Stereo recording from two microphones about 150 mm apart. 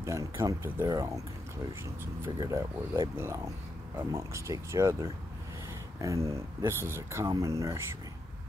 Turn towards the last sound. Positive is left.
turn(degrees=-20)  # may be behind; listen again after turning